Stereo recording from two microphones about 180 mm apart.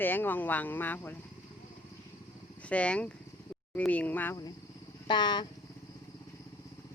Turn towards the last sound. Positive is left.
turn(degrees=25)  # may be behind; listen again after turning